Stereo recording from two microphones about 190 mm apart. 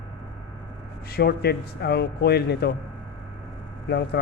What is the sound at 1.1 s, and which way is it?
Speech, 55° left (ahead or behind).